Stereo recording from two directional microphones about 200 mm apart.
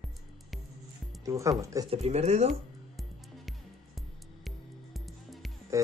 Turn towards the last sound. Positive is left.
turn(degrees=0)  # may be behind; listen again after turning